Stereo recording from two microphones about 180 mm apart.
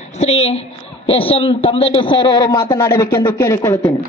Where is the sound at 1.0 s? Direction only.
30° left (ahead or behind).